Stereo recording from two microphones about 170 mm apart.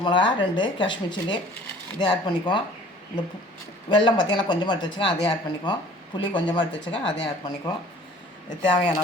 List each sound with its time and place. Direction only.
0.0 s speech: 30° left (ahead or behind)
3.8 s speech: 25° left (ahead or behind)